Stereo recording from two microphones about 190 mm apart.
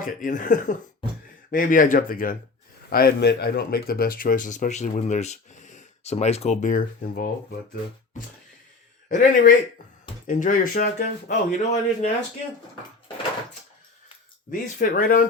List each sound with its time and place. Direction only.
0.0 s speech: 45° left (ahead or behind)
9.0 s speech: 45° left (ahead or behind)
14.5 s speech: 45° left (ahead or behind)